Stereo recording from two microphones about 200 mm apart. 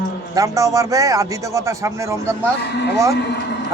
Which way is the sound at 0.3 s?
15° right (ahead or behind).